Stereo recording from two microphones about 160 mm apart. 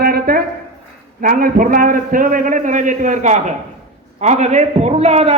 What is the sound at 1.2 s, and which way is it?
A man's voice, 60° right (ahead or behind).